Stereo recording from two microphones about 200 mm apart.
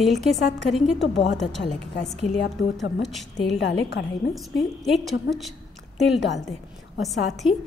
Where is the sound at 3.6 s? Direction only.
60° left (ahead or behind).